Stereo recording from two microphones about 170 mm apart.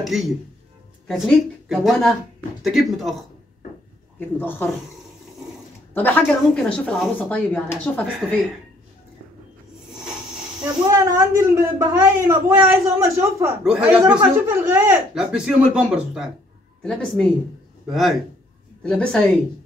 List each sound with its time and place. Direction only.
0.0 s a woman's voice: centre (ahead or behind)
4.2 s speech: 10° left (ahead or behind)
5.9 s speech: 10° left (ahead or behind)
10.6 s speech: 20° right (ahead or behind)
13.7 s speech: 5° right (ahead or behind)
15.1 s a woman's voice: 5° right (ahead or behind)